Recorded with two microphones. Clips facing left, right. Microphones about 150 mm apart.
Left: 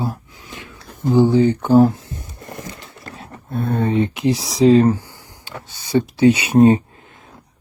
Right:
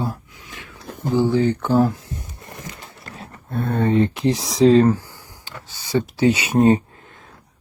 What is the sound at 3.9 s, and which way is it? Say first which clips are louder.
Speech: right 1 dB; 30° right (ahead or behind).